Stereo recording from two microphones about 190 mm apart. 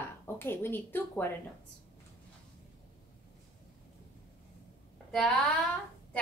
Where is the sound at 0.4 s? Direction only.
10° left (ahead or behind).